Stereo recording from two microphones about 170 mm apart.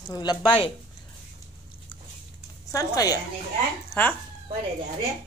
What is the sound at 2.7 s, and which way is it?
Speech, 20° left (ahead or behind).